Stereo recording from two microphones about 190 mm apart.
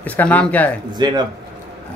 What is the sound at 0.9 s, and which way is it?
Speech, 20° right (ahead or behind).